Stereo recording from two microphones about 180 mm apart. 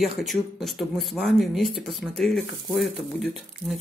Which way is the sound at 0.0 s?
Centre (ahead or behind).